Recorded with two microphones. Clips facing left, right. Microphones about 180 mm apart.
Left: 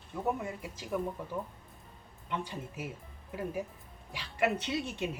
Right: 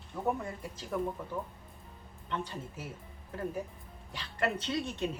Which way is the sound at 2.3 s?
10° left (ahead or behind).